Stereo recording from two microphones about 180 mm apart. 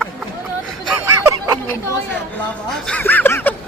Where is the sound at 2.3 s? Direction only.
5° left (ahead or behind).